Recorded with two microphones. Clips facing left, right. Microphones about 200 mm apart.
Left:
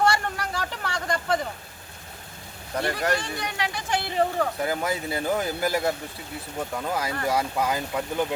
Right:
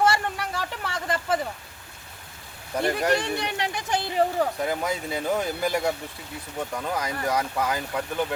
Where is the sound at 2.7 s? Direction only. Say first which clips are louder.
Right 2 dB; 15° right (ahead or behind).